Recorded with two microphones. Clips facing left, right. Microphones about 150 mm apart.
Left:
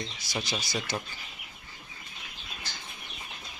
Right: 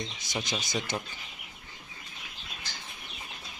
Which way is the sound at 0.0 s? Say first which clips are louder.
Even; 20° right (ahead or behind).